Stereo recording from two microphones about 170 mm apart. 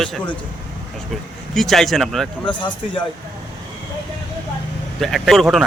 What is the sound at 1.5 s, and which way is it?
Speech, centre (ahead or behind).